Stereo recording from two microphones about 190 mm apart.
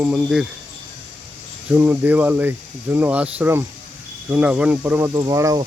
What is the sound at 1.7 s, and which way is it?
A man's voice, 10° right (ahead or behind).